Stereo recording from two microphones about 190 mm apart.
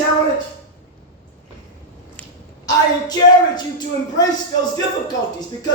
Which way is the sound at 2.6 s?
20° left (ahead or behind).